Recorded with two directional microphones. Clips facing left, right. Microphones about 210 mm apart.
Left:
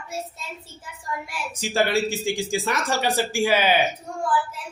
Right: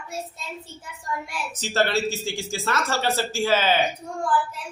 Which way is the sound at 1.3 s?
10° left (ahead or behind).